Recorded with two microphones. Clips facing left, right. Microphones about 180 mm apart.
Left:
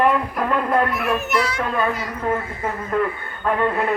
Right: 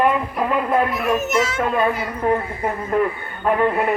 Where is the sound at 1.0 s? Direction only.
40° right (ahead or behind).